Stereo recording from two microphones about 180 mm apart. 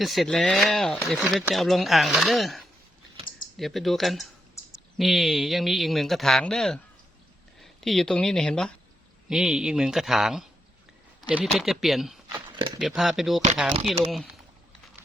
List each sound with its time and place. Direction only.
0.0 s speech: centre (ahead or behind)
12.5 s a sound: 25° right (ahead or behind)
12.8 s speech: centre (ahead or behind)